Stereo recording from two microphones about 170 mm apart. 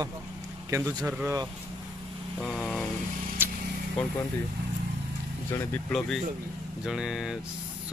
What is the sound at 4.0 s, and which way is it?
Speech, 5° left (ahead or behind).